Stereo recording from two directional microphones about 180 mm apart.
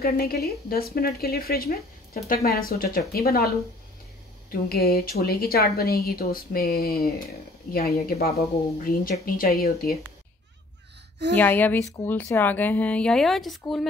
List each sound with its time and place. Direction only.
0.0 s a woman's voice: 60° left (ahead or behind)
4.5 s a woman's voice: 55° left (ahead or behind)
11.3 s a woman's voice: 10° left (ahead or behind)